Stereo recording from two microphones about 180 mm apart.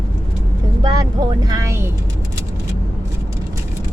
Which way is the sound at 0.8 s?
20° right (ahead or behind).